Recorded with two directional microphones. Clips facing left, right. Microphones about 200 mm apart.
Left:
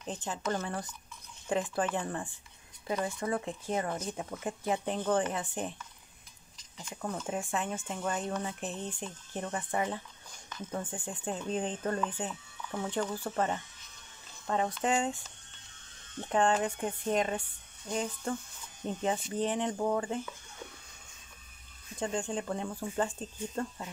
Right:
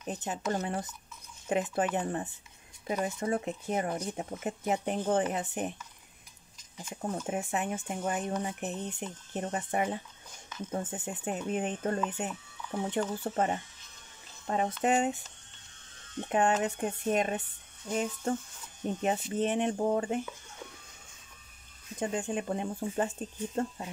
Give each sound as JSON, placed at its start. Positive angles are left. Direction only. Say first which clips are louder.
{"t": 0.1, "sound": "speech", "louder": "right 1 dB", "side_deg": -20}
{"t": 6.9, "sound": "speech", "louder": "right 2 dB", "side_deg": -20}
{"t": 16.3, "sound": "speech", "louder": "even", "side_deg": -20}
{"t": 21.9, "sound": "speech", "louder": "right 1 dB", "side_deg": -20}